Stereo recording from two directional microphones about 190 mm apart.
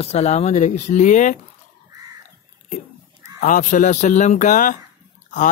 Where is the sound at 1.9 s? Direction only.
20° right (ahead or behind).